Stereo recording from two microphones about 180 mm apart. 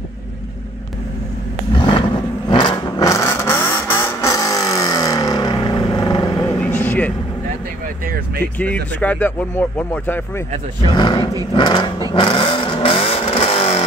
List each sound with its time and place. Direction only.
1.8 s a sound: 30° left (ahead or behind)
2.5 s vehicle: 20° left (ahead or behind)
6.6 s vehicle: 10° left (ahead or behind)
7.8 s vehicle: 55° right (ahead or behind)
8.5 s speech: 10° left (ahead or behind)
10.9 s speech: 25° left (ahead or behind)
12.1 s vehicle: 25° left (ahead or behind)